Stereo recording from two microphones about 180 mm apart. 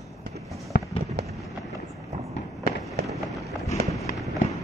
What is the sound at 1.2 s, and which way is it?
Fireworks, 65° right (ahead or behind).